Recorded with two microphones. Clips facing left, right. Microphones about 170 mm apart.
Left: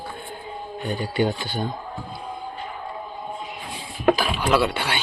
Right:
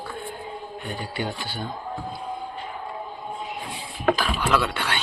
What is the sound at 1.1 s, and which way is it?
Speech, 20° left (ahead or behind).